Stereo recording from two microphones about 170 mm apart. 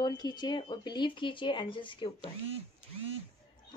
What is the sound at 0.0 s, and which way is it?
Speech, 25° left (ahead or behind).